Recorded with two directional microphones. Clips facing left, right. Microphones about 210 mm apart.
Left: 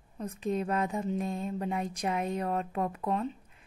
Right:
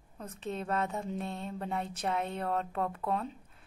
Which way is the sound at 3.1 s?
Centre (ahead or behind).